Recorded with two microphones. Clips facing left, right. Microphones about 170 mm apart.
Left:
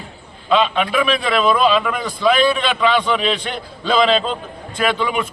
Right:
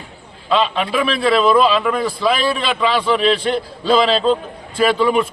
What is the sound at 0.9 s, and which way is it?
Speech, 30° right (ahead or behind).